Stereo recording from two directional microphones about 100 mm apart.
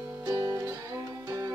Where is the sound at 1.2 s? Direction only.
35° right (ahead or behind).